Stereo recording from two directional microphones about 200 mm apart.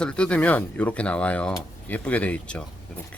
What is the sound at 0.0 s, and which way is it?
Speech, 5° left (ahead or behind).